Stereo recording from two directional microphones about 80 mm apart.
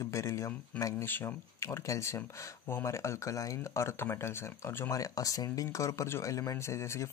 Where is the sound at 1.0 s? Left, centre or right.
Left.